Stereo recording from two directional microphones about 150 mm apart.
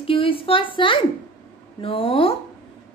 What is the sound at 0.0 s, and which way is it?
A woman's voice, 35° left (ahead or behind).